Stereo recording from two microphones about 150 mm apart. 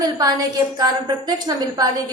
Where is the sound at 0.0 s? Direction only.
25° right (ahead or behind).